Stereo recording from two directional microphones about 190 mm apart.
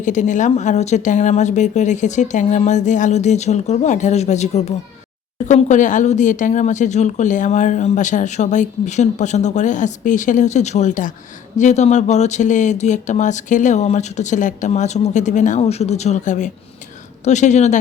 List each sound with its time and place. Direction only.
0.0 s speech: 40° left (ahead or behind)